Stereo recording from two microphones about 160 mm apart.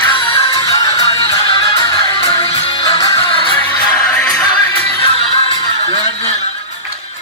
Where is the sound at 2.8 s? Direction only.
25° left (ahead or behind).